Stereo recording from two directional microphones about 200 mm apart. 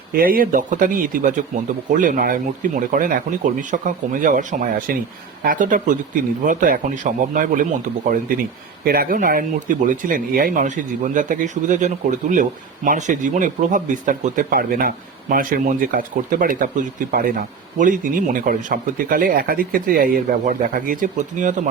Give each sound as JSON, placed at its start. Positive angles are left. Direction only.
{"t": 0.1, "sound": "speech", "side_deg": -45}